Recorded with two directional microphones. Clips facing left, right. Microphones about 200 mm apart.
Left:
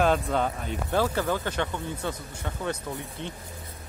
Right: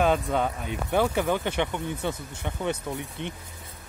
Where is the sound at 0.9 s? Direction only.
20° right (ahead or behind).